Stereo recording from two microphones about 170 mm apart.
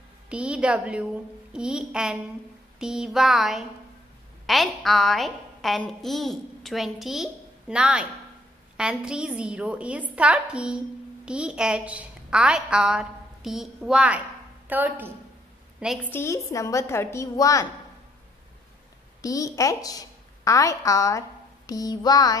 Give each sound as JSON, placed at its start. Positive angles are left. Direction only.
{"t": 0.3, "sound": "a woman's voice", "side_deg": -5}
{"t": 16.0, "sound": "a woman's voice", "side_deg": 15}
{"t": 19.2, "sound": "a woman's voice", "side_deg": 20}
{"t": 21.6, "sound": "a sound", "side_deg": 20}